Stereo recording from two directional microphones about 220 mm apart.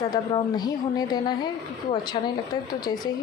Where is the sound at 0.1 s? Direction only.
15° left (ahead or behind).